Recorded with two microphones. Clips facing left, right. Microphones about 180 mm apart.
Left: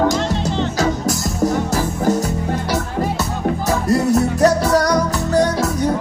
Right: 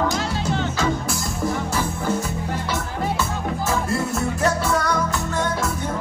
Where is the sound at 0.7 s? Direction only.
40° left (ahead or behind).